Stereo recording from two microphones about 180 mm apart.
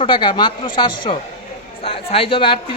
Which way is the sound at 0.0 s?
25° left (ahead or behind).